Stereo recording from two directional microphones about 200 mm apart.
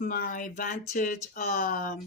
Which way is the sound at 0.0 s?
45° left (ahead or behind).